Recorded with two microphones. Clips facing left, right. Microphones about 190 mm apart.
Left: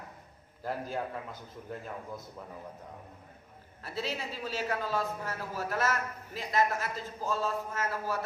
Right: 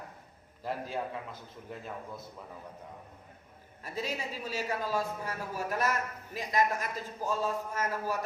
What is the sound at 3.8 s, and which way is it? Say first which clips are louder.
A man's voice: even; 10° right (ahead or behind).